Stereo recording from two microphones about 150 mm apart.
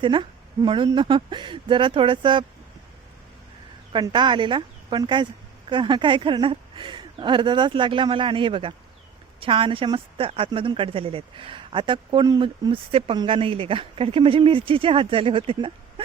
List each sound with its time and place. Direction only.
0.0 s a woman's voice: 35° right (ahead or behind)
3.9 s speech: 30° right (ahead or behind)